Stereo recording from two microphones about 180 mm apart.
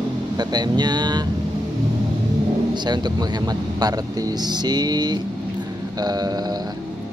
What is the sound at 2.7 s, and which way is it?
Speech, 25° right (ahead or behind).